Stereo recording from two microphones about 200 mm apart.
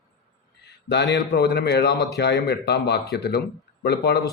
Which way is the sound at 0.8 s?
60° left (ahead or behind).